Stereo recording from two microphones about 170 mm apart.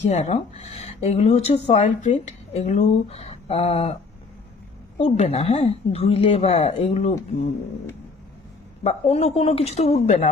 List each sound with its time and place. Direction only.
0.1 s speech: 40° left (ahead or behind)
4.9 s speech: 40° left (ahead or behind)
8.8 s speech: 40° left (ahead or behind)